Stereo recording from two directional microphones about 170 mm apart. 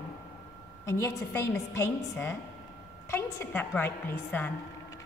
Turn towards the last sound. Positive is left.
turn(degrees=15)  # may be behind; listen again after turning